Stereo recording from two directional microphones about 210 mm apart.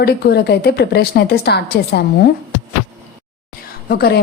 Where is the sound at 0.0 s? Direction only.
50° left (ahead or behind).